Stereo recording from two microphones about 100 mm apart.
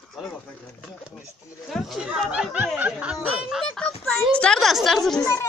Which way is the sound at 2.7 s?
15° right (ahead or behind).